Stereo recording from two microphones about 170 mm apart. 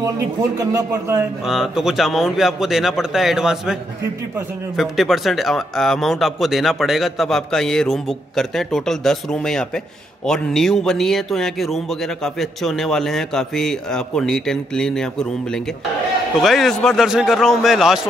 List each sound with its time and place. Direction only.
0.6 s speech: 20° right (ahead or behind)
1.4 s speech: centre (ahead or behind)
4.7 s speech: centre (ahead or behind)
16.3 s speech: centre (ahead or behind)